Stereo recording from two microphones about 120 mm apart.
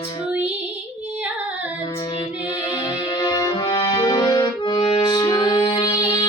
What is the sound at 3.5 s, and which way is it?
Accordion, 35° left (ahead or behind).